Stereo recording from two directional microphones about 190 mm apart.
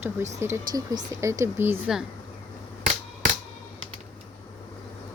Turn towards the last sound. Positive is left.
turn(degrees=-45)  # may be behind; listen again after turning